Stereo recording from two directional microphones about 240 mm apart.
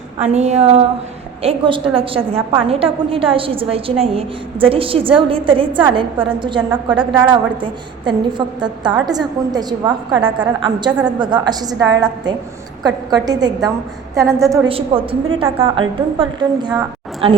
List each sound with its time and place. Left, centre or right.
0.2 s a woman's voice: right
14.7 s a woman's voice: right